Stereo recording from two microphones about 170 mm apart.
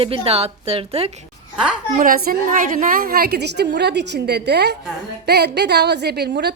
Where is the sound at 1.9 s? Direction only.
55° right (ahead or behind).